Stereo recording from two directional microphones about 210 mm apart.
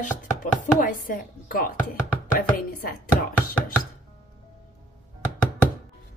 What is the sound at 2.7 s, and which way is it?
Speech, 45° left (ahead or behind).